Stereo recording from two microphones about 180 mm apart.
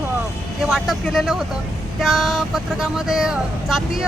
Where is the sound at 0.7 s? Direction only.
Centre (ahead or behind).